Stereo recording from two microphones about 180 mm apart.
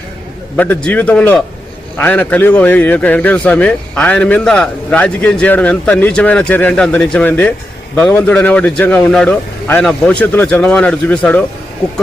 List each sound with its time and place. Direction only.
0.5 s a man's voice: 5° left (ahead or behind)